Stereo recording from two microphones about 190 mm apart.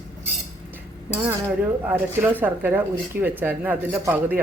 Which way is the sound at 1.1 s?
5° right (ahead or behind).